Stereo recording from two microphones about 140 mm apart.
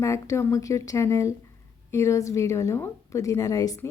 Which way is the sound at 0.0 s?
20° left (ahead or behind).